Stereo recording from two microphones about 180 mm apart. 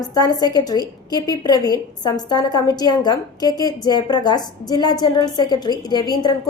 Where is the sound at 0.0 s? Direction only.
20° left (ahead or behind).